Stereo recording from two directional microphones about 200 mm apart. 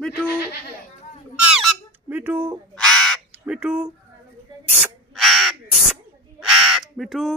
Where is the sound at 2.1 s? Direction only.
10° right (ahead or behind).